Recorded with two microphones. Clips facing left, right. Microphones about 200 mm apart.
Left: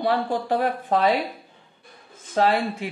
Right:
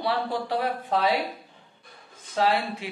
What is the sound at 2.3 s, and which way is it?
Speech, 50° left (ahead or behind).